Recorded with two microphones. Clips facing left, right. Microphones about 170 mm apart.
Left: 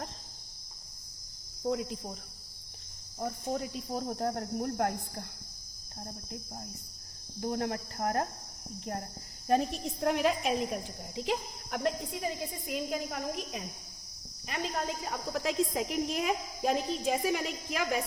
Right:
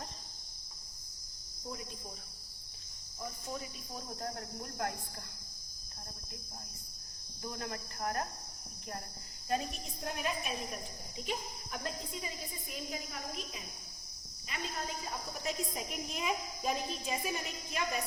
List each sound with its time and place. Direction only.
1.6 s cricket: 80° left
3.2 s cricket: 60° left (ahead or behind)
7.4 s cricket: 60° left (ahead or behind)
10.0 s a woman's voice: 90° left; by 13.7 s 55° left (ahead or behind)
14.6 s a woman's voice: 85° left